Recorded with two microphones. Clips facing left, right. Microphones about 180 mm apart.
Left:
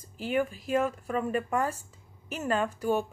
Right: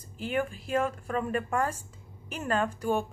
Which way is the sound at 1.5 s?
10° left (ahead or behind).